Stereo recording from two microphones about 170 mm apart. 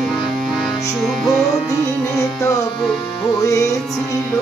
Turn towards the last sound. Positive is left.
turn(degrees=20)  # may be behind; listen again after turning